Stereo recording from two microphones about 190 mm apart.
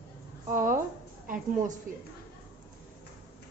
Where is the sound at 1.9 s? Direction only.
45° right (ahead or behind).